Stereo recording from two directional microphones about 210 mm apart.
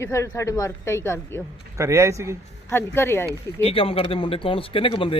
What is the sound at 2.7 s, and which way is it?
Speech, 10° left (ahead or behind).